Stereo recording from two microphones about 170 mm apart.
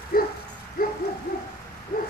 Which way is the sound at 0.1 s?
60° left (ahead or behind).